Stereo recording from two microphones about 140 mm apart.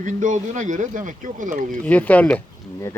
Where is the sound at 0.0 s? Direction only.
60° right (ahead or behind).